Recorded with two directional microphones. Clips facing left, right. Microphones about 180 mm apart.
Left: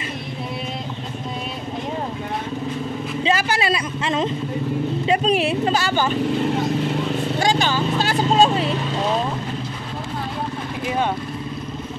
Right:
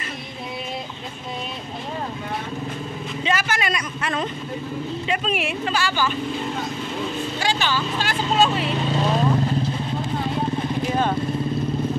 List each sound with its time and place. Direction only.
3.3 s a sound: 30° left (ahead or behind)
5.0 s speech: 35° left (ahead or behind)
7.3 s speech: 45° left (ahead or behind)